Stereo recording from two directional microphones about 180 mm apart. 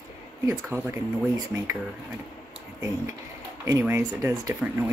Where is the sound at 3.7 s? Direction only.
15° right (ahead or behind).